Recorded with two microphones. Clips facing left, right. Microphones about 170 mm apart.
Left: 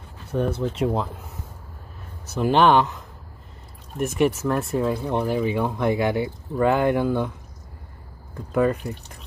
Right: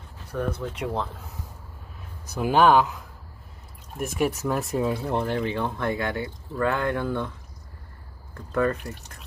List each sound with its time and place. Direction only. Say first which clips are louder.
0.3 s speech: left 5 dB; 25° left (ahead or behind)
2.3 s speech: left 1 dB; 10° right (ahead or behind)
4.2 s speech: left 3 dB; centre (ahead or behind)
8.4 s speech: left 3 dB; 10° left (ahead or behind)